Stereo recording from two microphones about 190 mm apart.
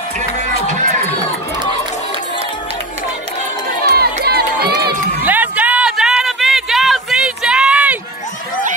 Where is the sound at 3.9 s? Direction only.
55° right (ahead or behind).